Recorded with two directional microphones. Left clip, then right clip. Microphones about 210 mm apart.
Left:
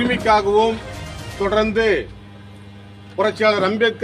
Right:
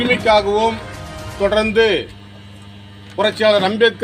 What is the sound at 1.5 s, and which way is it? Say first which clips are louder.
Speech: right 3 dB; 40° right (ahead or behind).